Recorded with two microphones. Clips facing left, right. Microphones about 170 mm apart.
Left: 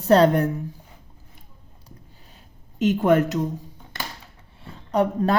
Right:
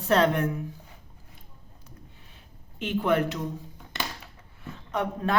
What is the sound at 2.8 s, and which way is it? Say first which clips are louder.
Speech: left 6 dB; 45° left (ahead or behind).